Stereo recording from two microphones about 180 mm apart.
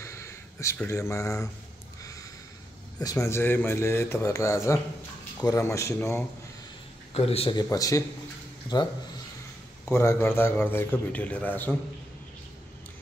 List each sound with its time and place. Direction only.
0.0 s a sound: 15° left (ahead or behind)
3.0 s a man's voice: 20° left (ahead or behind)
7.2 s speech: 35° left (ahead or behind)
7.7 s speech: 20° left (ahead or behind)
9.8 s a man's voice: 15° left (ahead or behind)